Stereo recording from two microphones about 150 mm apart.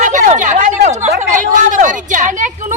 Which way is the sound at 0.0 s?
55° right (ahead or behind).